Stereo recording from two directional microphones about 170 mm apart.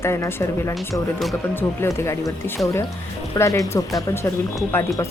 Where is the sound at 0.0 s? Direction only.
15° left (ahead or behind).